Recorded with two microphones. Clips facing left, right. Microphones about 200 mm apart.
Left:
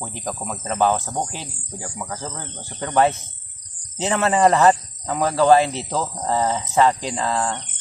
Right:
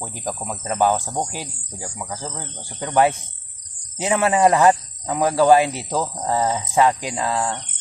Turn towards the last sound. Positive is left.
turn(degrees=-10)  # may be behind; listen again after turning